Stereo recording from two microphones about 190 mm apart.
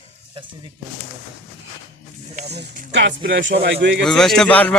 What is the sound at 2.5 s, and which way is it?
Speech, 65° right (ahead or behind).